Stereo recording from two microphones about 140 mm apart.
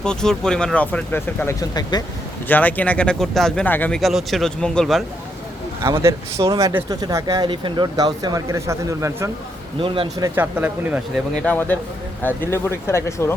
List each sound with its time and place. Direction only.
0.0 s speech: 5° left (ahead or behind)
1.7 s speech: 30° left (ahead or behind)
2.5 s speech: 10° left (ahead or behind)
5.8 s speech: 20° right (ahead or behind)
9.8 s speech: 40° right (ahead or behind)
10.2 s speech: 15° right (ahead or behind)
11.4 s speech: 15° left (ahead or behind)